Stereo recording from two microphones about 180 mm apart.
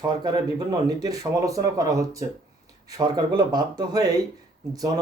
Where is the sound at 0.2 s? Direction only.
25° right (ahead or behind).